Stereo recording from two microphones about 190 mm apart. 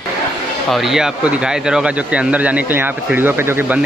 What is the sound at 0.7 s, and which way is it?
Speech, centre (ahead or behind).